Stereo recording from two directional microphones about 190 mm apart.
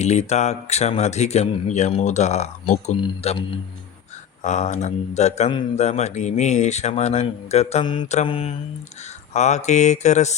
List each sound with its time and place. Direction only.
0.0 s speech: 35° left (ahead or behind)
4.4 s speech: 35° left (ahead or behind)